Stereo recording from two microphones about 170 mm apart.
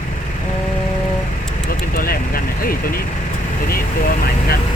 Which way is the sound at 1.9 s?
60° left (ahead or behind).